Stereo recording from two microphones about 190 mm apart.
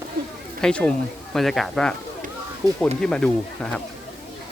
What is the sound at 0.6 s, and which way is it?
Speech, 5° left (ahead or behind).